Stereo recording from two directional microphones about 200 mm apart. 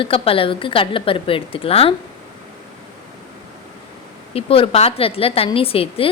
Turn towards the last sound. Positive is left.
turn(degrees=30)  # may be behind; listen again after turning